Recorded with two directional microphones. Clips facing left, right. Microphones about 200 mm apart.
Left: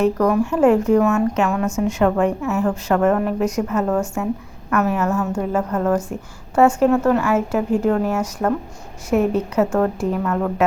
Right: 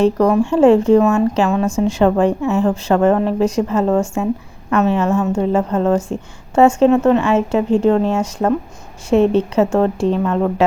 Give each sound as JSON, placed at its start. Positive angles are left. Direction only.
{"t": 0.0, "sound": "speech", "side_deg": -25}